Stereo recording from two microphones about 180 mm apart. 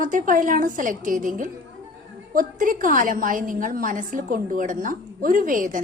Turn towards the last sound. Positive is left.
turn(degrees=-50)  # may be behind; listen again after turning